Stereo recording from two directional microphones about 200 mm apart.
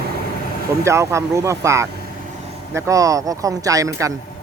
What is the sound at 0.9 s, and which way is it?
Speech, 15° right (ahead or behind).